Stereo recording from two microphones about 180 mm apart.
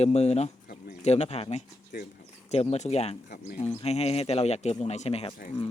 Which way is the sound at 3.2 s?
55° left (ahead or behind).